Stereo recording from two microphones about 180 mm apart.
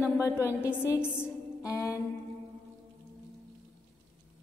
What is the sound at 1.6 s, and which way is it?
Music, 15° left (ahead or behind).